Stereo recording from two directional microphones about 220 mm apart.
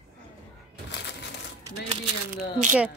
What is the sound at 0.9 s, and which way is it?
Crumpling, 50° left (ahead or behind).